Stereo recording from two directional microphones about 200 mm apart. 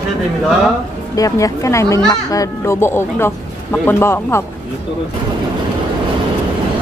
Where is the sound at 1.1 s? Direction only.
15° left (ahead or behind).